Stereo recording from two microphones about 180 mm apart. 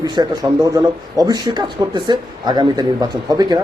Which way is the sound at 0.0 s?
20° right (ahead or behind).